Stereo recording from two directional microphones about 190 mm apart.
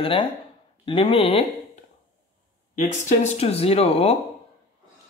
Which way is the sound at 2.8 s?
35° left (ahead or behind).